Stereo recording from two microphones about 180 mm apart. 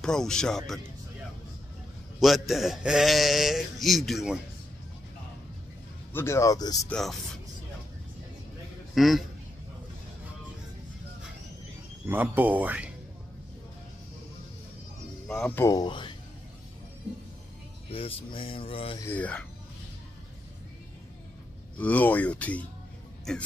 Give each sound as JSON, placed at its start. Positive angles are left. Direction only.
{"t": 0.0, "sound": "speech", "side_deg": 5}
{"t": 2.1, "sound": "speech", "side_deg": 0}
{"t": 6.1, "sound": "speech", "side_deg": 15}
{"t": 6.9, "sound": "speech", "side_deg": 0}
{"t": 8.9, "sound": "a man's voice", "side_deg": 0}
{"t": 12.1, "sound": "speech", "side_deg": -10}
{"t": 15.2, "sound": "speech", "side_deg": 5}
{"t": 15.6, "sound": "speech", "side_deg": 25}
{"t": 17.9, "sound": "mantra", "side_deg": 30}
{"t": 18.9, "sound": "speech", "side_deg": 10}
{"t": 21.7, "sound": "speech", "side_deg": 10}